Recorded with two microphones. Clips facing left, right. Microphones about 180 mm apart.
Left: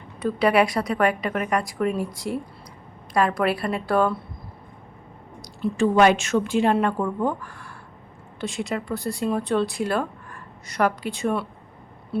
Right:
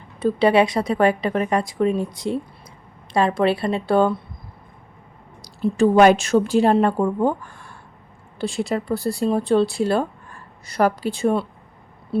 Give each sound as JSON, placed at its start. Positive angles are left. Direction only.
{"t": 0.2, "sound": "a woman's voice", "side_deg": -25}
{"t": 5.4, "sound": "speech", "side_deg": -40}